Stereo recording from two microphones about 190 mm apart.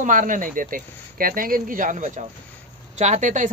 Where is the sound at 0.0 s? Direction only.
45° right (ahead or behind).